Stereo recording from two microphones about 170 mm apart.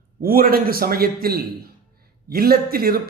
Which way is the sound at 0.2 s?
60° right (ahead or behind).